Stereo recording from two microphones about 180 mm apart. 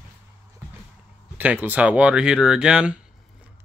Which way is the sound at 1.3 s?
10° right (ahead or behind).